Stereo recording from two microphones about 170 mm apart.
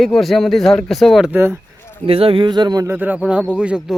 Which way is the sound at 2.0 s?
35° right (ahead or behind).